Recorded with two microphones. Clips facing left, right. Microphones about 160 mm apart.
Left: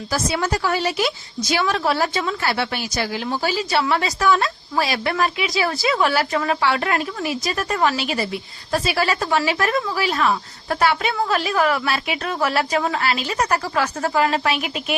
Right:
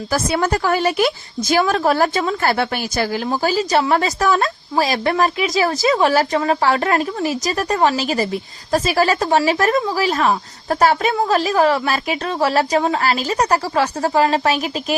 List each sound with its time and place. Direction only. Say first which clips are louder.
0.1 s a woman's voice: right 4 dB; 50° right (ahead or behind)